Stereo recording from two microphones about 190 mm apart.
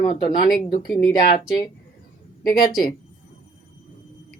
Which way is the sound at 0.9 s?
Centre (ahead or behind).